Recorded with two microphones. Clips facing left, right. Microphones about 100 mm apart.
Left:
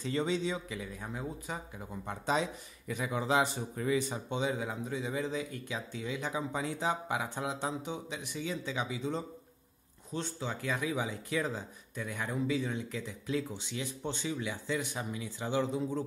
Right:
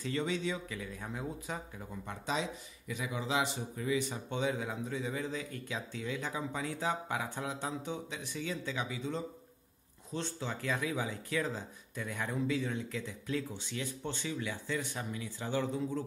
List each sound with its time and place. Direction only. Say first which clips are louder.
0.0 s speech: left 2 dB; 25° left (ahead or behind)
1.0 s speech: right 1 dB; 5° left (ahead or behind)
2.0 s a man's voice: left 4 dB; 40° left (ahead or behind)
4.3 s speech: even; 15° left (ahead or behind)
10.1 s speech: left 1 dB; 5° left (ahead or behind)
12.0 s speech: left 1 dB; 5° left (ahead or behind)